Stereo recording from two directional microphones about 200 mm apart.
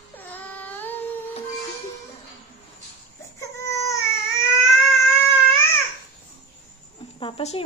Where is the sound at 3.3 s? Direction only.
15° left (ahead or behind).